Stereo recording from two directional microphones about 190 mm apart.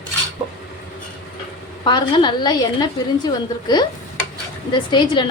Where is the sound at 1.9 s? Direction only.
25° left (ahead or behind).